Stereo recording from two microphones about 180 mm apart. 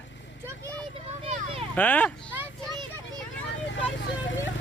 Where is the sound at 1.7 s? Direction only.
10° left (ahead or behind).